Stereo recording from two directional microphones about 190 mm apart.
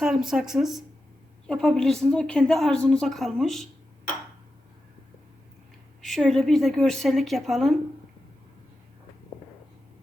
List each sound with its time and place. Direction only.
0.0 s a woman's voice: 5° right (ahead or behind)
6.0 s a woman's voice: centre (ahead or behind)